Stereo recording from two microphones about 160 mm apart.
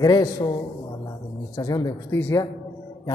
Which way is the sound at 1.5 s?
25° left (ahead or behind).